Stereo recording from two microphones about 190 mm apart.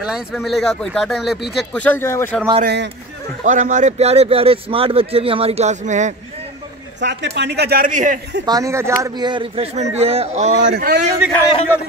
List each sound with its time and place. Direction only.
0.0 s speech: centre (ahead or behind)
2.6 s a man's voice: 65° right (ahead or behind)
3.4 s speech: 40° right (ahead or behind)
7.0 s a man's voice: 65° right (ahead or behind); by 8.2 s 45° right (ahead or behind)
8.5 s speech: 15° right (ahead or behind); by 10.5 s 35° right (ahead or behind)
10.6 s a man's voice: 55° right (ahead or behind)